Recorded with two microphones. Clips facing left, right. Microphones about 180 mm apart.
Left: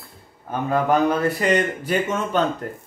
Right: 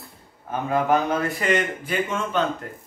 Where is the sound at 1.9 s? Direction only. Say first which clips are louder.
Left 3 dB; 40° left (ahead or behind).